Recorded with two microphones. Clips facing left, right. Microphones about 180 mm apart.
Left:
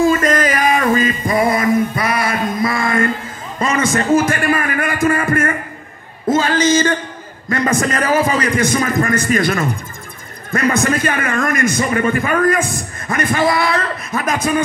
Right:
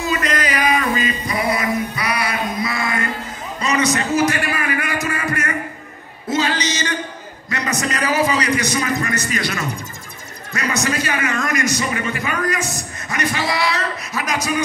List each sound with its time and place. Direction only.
0.0 s music: 50° left (ahead or behind)
3.5 s a sound: 50° left (ahead or behind)
7.4 s a man's voice: 50° left (ahead or behind)